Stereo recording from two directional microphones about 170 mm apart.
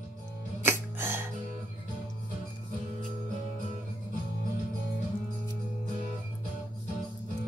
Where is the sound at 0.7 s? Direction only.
15° right (ahead or behind).